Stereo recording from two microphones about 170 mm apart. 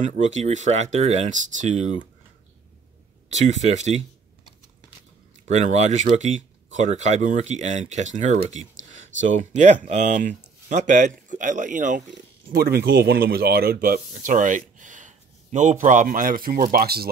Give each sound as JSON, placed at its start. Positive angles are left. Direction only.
{"t": 0.0, "sound": "speech", "side_deg": -45}
{"t": 3.3, "sound": "speech", "side_deg": -45}
{"t": 5.5, "sound": "speech", "side_deg": -40}
{"t": 12.5, "sound": "speech", "side_deg": -65}